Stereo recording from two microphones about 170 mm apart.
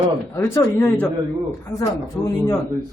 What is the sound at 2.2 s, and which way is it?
Speech, 10° left (ahead or behind).